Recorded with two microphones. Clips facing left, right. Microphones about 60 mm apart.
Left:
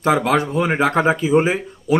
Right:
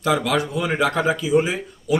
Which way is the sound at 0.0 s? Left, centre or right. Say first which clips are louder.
Left 4 dB; left.